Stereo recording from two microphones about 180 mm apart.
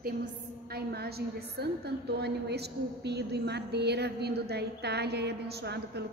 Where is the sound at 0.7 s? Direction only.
60° right (ahead or behind).